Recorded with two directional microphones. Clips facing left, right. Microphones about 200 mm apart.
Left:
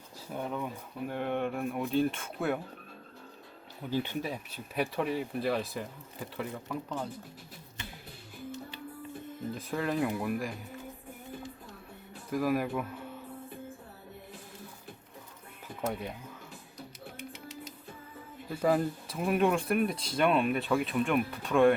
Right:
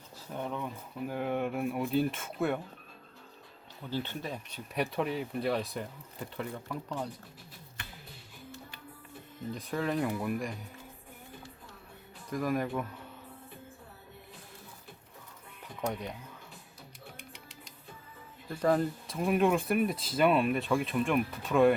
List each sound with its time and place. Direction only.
0.3 s speech: 5° left (ahead or behind)
3.8 s speech: 15° left (ahead or behind)
9.5 s speech: centre (ahead or behind)
12.3 s speech: 5° left (ahead or behind)
15.8 s speech: 5° left (ahead or behind)
18.4 s speech: 5° left (ahead or behind)